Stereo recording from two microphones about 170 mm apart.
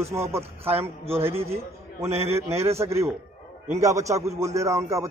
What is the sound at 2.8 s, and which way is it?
A man's voice, 15° right (ahead or behind).